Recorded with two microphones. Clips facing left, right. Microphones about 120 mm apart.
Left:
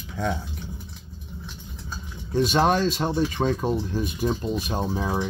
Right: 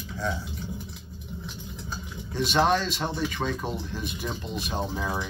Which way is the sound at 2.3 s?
45° left (ahead or behind).